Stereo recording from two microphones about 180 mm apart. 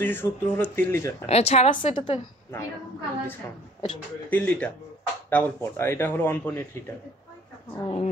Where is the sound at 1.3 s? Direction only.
35° left (ahead or behind).